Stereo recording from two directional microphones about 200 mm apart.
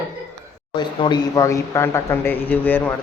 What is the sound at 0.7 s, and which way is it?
Speech, 20° left (ahead or behind).